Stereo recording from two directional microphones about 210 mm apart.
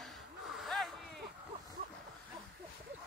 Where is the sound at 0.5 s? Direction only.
Centre (ahead or behind).